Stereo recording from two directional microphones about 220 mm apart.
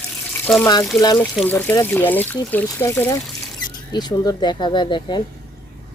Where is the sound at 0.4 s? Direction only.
10° left (ahead or behind).